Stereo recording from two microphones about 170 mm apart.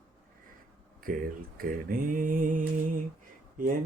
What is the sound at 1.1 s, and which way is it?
Mantra, 55° right (ahead or behind).